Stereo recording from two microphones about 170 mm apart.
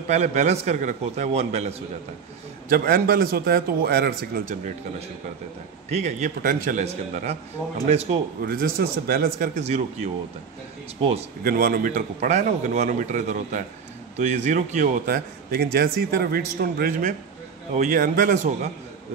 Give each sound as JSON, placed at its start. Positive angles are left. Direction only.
{"t": 0.1, "sound": "a man's voice", "side_deg": -40}
{"t": 2.7, "sound": "a man's voice", "side_deg": -60}
{"t": 5.9, "sound": "a man's voice", "side_deg": -40}
{"t": 6.8, "sound": "a man's voice", "side_deg": -40}
{"t": 8.4, "sound": "a man's voice", "side_deg": -60}
{"t": 9.6, "sound": "a man's voice", "side_deg": -40}
{"t": 11.4, "sound": "a man's voice", "side_deg": -55}